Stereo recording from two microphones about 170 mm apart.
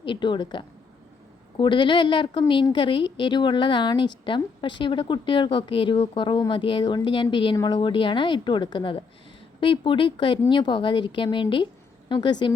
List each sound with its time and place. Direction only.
0.0 s a woman's voice: 30° left (ahead or behind)